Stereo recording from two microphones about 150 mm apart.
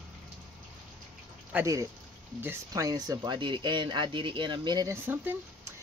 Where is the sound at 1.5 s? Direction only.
20° right (ahead or behind).